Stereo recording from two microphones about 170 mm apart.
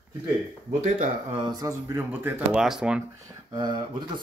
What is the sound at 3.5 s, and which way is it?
Speech, 25° right (ahead or behind).